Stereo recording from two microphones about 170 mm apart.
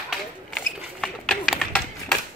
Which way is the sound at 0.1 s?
5° left (ahead or behind).